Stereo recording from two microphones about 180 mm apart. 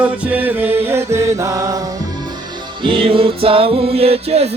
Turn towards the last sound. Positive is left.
turn(degrees=-35)  # may be behind; listen again after turning